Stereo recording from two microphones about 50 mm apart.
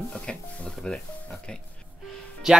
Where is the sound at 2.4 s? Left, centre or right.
Centre.